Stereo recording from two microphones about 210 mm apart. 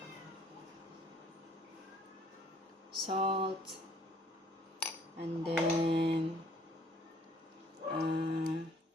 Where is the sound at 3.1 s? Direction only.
25° right (ahead or behind).